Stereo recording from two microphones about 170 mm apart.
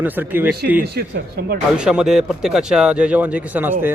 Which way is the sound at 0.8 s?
70° right (ahead or behind).